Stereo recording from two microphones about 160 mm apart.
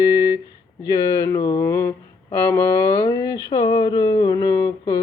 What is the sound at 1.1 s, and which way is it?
Music, 20° left (ahead or behind).